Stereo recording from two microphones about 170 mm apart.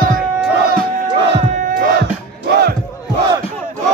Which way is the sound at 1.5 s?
55° right (ahead or behind).